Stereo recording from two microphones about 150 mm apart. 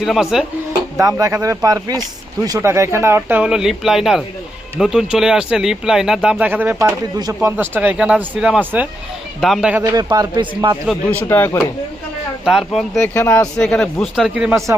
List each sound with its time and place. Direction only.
0.0 s speech: centre (ahead or behind)
0.9 s speech: 20° right (ahead or behind)
7.2 s a man's voice: 25° right (ahead or behind)
7.5 s a man's voice: 10° right (ahead or behind); by 10.8 s 30° right (ahead or behind)
11.1 s speech: 15° left (ahead or behind)
12.5 s speech: centre (ahead or behind)
13.1 s speech: 15° left (ahead or behind)
13.6 s speech: 5° left (ahead or behind)